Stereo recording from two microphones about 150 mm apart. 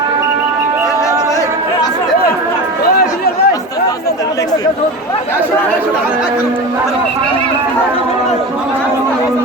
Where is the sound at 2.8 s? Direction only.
90° left.